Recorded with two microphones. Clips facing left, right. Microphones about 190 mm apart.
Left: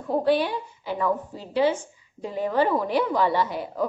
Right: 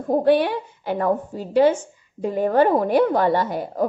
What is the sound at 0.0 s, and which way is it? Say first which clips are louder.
A woman's voice: right 5 dB; 50° right (ahead or behind).